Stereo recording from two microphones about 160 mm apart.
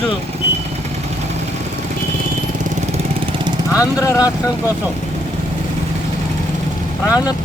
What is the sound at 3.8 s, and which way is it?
Speech, 20° left (ahead or behind).